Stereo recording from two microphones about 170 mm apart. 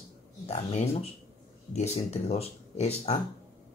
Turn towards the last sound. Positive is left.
turn(degrees=40)  # may be behind; listen again after turning